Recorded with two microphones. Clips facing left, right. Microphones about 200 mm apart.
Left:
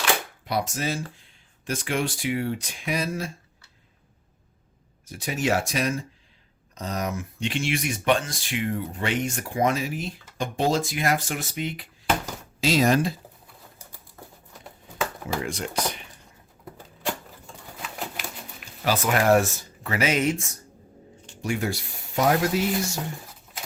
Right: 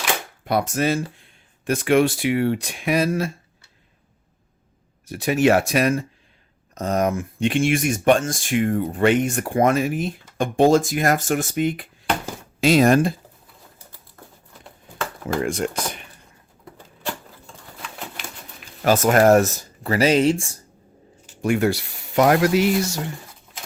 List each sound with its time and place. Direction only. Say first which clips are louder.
0.4 s speech: right 7 dB; 55° right (ahead or behind)
5.0 s speech: right 8 dB; 65° right (ahead or behind)
6.7 s speech: right 8 dB; 50° right (ahead or behind)
15.4 s speech: right 6 dB; 50° right (ahead or behind)
17.1 s patter: even; 10° left (ahead or behind)
18.9 s speech: right 6 dB; 45° right (ahead or behind); by 20.6 s 30° right (ahead or behind)
21.4 s speech: right 8 dB; 60° right (ahead or behind)